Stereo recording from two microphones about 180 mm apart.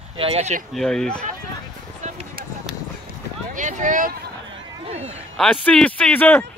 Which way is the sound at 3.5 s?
45° right (ahead or behind).